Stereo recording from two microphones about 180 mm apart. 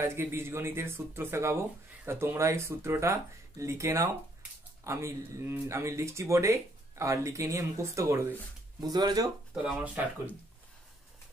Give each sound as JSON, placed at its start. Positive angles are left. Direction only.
{"t": 0.0, "sound": "speech", "side_deg": -15}
{"t": 9.5, "sound": "speech", "side_deg": -5}